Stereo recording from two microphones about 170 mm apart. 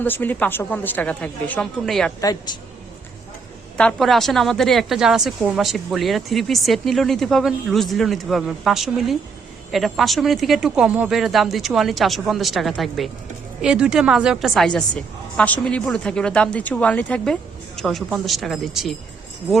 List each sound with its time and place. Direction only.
0.0 s a woman's voice: 10° left (ahead or behind)
2.2 s speech: 25° left (ahead or behind)
3.8 s a woman's voice: 5° left (ahead or behind)